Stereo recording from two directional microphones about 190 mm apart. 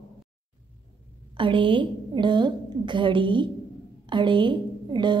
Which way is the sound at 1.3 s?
25° right (ahead or behind).